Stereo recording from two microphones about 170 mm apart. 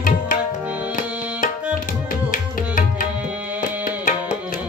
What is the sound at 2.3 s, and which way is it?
Music, 55° left (ahead or behind).